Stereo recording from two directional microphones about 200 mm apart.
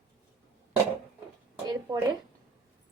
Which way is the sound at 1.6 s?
20° right (ahead or behind).